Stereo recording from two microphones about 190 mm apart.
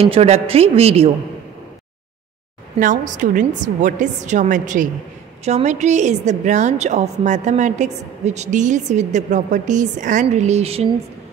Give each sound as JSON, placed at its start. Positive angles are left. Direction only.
{"t": 0.0, "sound": "a woman's voice", "side_deg": -30}
{"t": 2.8, "sound": "a woman's voice", "side_deg": -40}